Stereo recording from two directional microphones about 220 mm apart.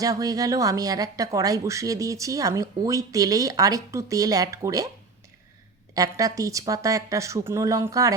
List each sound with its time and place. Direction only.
0.0 s speech: 15° right (ahead or behind)
5.9 s speech: 15° right (ahead or behind)